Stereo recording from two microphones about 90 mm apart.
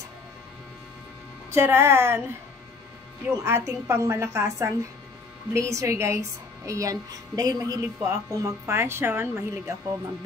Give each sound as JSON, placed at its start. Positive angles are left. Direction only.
{"t": 1.5, "sound": "a woman's voice", "side_deg": -25}
{"t": 3.4, "sound": "a woman's voice", "side_deg": -25}